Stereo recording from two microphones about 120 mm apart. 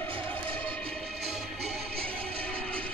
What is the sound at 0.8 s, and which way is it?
Music, centre (ahead or behind).